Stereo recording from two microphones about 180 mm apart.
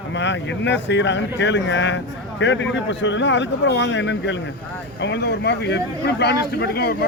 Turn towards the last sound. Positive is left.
turn(degrees=60)  # may be behind; listen again after turning